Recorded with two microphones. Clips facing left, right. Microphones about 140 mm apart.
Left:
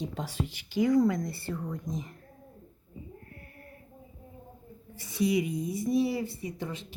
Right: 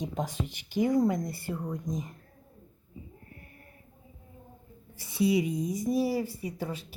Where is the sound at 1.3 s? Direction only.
15° right (ahead or behind).